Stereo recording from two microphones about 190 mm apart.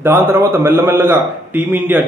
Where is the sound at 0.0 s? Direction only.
10° right (ahead or behind).